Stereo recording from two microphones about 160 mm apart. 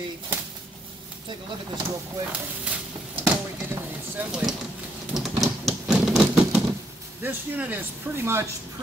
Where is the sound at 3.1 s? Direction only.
10° right (ahead or behind).